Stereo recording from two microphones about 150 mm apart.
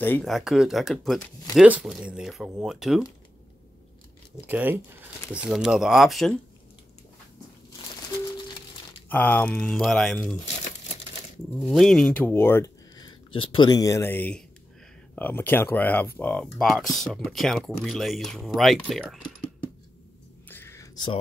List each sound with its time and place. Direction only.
0.2 s speech: centre (ahead or behind)
4.4 s speech: 10° right (ahead or behind)
9.1 s speech: 10° left (ahead or behind)
11.5 s speech: centre (ahead or behind)
12.9 s speech: 30° left (ahead or behind); by 19.1 s centre (ahead or behind)
20.4 s a sound: 15° left (ahead or behind)